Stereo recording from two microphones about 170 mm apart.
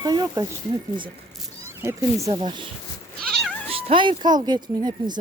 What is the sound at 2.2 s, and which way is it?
Speech, 25° right (ahead or behind).